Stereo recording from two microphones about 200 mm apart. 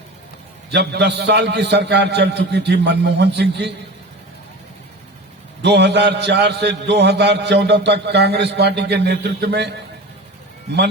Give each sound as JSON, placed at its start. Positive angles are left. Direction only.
{"t": 0.7, "sound": "a man's voice", "side_deg": -55}
{"t": 5.6, "sound": "a man's voice", "side_deg": -55}